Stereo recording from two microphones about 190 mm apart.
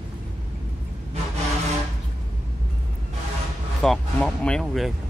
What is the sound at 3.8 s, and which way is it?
Speech, centre (ahead or behind).